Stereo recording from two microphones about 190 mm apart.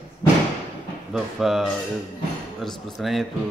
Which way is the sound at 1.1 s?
Centre (ahead or behind).